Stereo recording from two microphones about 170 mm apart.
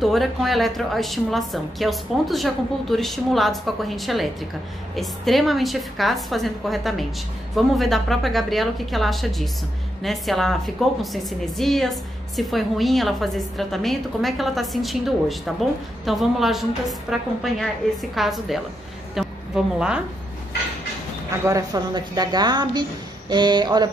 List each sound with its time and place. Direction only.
0.0 s a woman's voice: centre (ahead or behind)
19.1 s a sound: 5° right (ahead or behind)
21.5 s a woman's voice: 20° right (ahead or behind)